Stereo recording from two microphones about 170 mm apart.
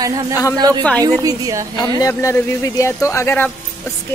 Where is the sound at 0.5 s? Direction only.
25° right (ahead or behind).